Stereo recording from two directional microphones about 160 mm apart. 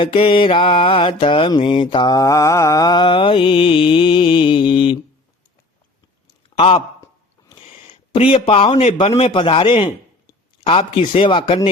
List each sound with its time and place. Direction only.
0.0 s mantra: 35° left (ahead or behind)
6.6 s mantra: 35° left (ahead or behind)
7.7 s a sound: 35° left (ahead or behind)
8.4 s mantra: 35° left (ahead or behind)